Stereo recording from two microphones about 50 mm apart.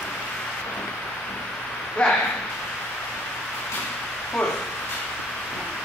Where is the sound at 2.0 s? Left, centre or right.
Left.